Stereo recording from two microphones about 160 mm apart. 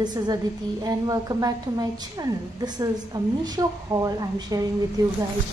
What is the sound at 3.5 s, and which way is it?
A woman's voice, 20° right (ahead or behind).